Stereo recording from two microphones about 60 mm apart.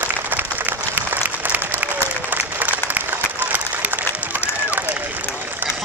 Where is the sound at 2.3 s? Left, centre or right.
Right.